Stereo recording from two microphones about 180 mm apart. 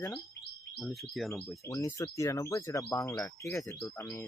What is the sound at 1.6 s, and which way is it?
Speech, 20° left (ahead or behind).